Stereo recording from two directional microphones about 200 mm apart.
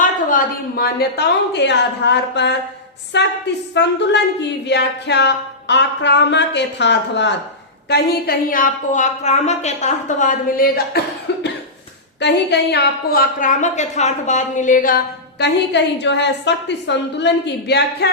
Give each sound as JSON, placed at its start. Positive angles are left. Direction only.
{"t": 0.0, "sound": "a woman's voice", "side_deg": 45}
{"t": 7.9, "sound": "a woman's voice", "side_deg": 50}
{"t": 11.3, "sound": "a woman's voice", "side_deg": 60}